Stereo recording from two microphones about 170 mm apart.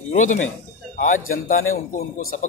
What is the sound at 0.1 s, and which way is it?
Speech, 45° left (ahead or behind).